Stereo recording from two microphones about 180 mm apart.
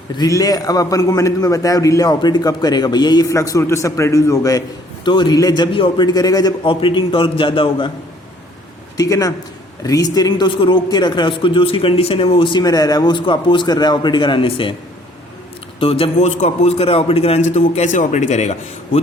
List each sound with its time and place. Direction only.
0.2 s a man's voice: 20° left (ahead or behind)
9.0 s a man's voice: 20° left (ahead or behind)
15.8 s a man's voice: 30° left (ahead or behind)